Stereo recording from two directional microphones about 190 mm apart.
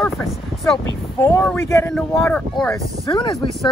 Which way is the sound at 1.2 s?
10° left (ahead or behind).